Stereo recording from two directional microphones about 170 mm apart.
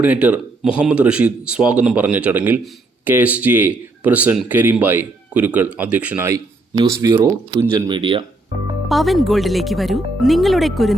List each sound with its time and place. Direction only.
0.0 s speech: 10° right (ahead or behind); by 8.2 s 30° right (ahead or behind)
8.9 s speech: centre (ahead or behind)